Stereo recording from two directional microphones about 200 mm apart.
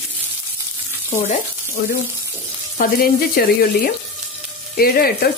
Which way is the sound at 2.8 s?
45° left (ahead or behind).